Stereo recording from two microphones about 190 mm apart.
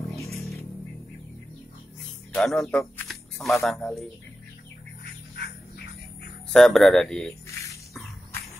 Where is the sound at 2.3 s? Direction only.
5° left (ahead or behind).